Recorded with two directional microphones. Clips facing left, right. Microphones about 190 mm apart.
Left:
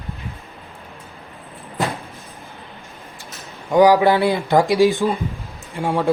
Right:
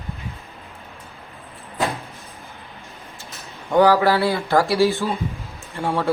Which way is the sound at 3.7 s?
15° left (ahead or behind).